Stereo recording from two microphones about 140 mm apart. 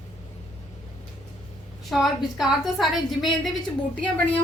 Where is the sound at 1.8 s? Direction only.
Centre (ahead or behind).